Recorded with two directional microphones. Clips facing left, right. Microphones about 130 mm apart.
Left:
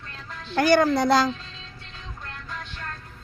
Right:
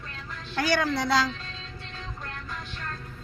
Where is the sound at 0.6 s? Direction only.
50° left (ahead or behind).